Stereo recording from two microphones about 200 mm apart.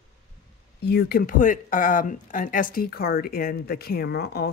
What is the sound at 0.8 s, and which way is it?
Speech, 50° left (ahead or behind).